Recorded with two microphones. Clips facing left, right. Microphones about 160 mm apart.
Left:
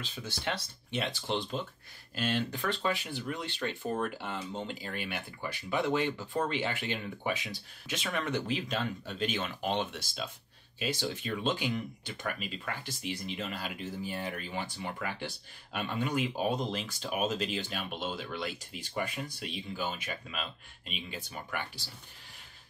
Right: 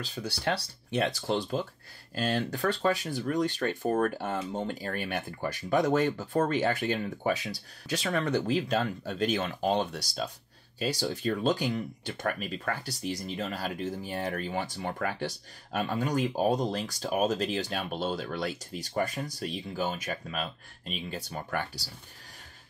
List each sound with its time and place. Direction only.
0.0 s speech: 40° right (ahead or behind)